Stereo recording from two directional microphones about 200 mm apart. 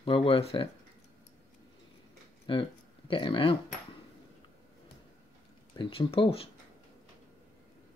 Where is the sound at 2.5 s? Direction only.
25° left (ahead or behind).